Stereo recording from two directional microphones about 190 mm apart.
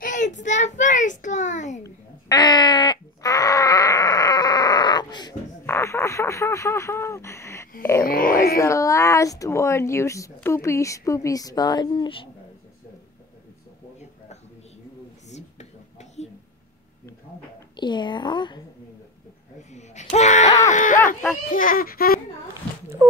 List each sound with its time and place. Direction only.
0.0 s child singing: 40° left (ahead or behind)
1.8 s wail: 20° left (ahead or behind)
5.7 s radio: 15° left (ahead or behind)
8.0 s wail: 50° left (ahead or behind)
8.5 s speech: 15° left (ahead or behind)
17.7 s a woman's voice: 25° left (ahead or behind)
19.7 s wail: 40° left (ahead or behind)
20.6 s a sound: 40° left (ahead or behind)
21.5 s speech: 45° left (ahead or behind)